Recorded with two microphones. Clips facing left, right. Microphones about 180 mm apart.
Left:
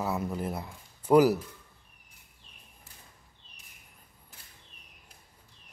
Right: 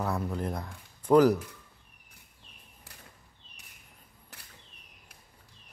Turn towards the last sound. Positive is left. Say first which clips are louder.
# right 3 dB
turn(degrees=-75)  # may be behind; listen again after turning